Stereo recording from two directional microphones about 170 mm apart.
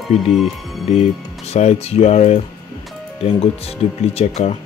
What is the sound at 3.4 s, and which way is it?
Speech, 35° left (ahead or behind).